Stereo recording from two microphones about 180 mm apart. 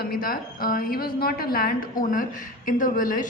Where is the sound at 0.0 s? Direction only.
55° left (ahead or behind).